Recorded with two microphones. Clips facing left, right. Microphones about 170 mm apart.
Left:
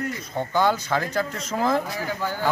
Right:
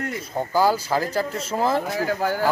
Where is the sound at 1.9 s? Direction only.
45° right (ahead or behind).